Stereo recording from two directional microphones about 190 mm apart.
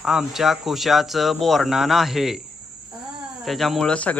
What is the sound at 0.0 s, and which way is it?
Speech, centre (ahead or behind).